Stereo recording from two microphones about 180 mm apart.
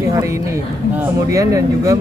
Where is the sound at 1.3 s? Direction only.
20° right (ahead or behind).